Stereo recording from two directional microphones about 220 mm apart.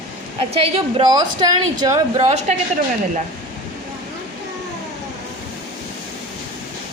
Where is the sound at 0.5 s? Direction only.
25° right (ahead or behind).